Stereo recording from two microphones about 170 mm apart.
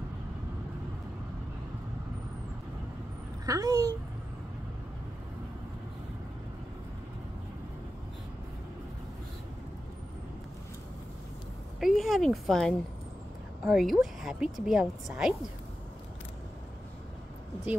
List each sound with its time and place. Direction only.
3.4 s speech: 20° right (ahead or behind)
11.8 s a woman's voice: centre (ahead or behind)